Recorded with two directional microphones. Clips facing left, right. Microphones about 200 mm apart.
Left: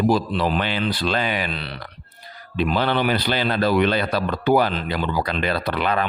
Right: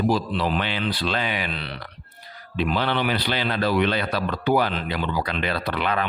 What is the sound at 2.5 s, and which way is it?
A man's voice, 45° left (ahead or behind).